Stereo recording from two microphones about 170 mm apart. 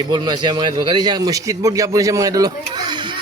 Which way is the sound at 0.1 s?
25° right (ahead or behind).